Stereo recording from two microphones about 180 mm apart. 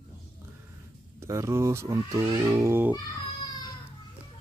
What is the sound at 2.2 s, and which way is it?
Cat, 25° right (ahead or behind).